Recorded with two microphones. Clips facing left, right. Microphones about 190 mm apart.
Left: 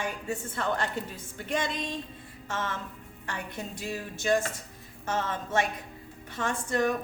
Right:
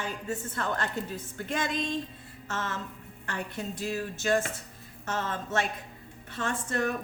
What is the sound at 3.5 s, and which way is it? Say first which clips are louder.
Speech: right 4 dB; 15° left (ahead or behind).